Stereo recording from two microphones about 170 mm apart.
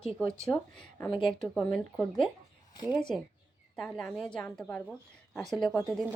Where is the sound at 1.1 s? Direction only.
30° left (ahead or behind).